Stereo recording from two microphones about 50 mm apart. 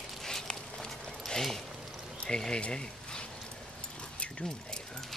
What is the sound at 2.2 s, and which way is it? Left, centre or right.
Speech, centre.